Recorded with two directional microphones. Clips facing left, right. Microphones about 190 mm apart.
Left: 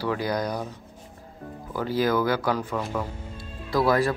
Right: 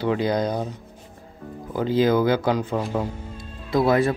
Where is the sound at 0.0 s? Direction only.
20° right (ahead or behind).